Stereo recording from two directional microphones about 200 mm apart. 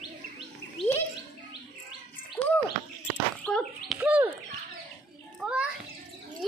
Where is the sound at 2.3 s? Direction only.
10° left (ahead or behind).